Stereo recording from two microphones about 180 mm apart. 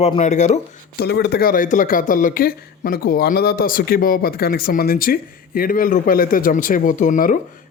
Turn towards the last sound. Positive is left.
turn(degrees=50)  # may be behind; listen again after turning